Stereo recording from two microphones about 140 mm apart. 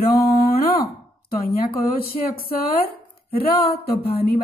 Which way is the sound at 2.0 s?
90° left.